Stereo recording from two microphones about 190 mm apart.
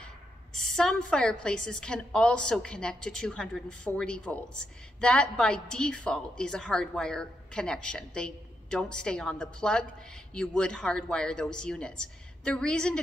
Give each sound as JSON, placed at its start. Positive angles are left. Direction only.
{"t": 0.0, "sound": "a woman's voice", "side_deg": 0}